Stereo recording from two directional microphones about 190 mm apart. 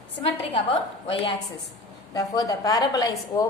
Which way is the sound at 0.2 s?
30° left (ahead or behind).